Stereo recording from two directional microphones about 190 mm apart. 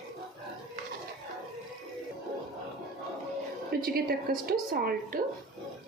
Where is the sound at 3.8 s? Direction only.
50° right (ahead or behind).